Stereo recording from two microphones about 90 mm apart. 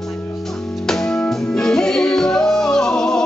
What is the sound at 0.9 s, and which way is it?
Music, 5° left (ahead or behind).